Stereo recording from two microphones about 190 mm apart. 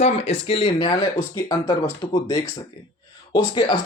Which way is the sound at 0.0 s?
35° left (ahead or behind).